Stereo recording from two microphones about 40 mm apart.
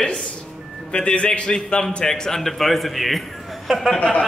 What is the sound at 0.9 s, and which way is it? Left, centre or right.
A man's voice, left.